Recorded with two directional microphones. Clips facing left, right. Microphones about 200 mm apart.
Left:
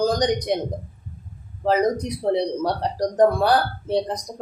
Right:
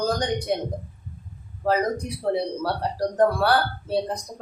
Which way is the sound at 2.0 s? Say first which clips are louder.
Left 3 dB; 20° left (ahead or behind).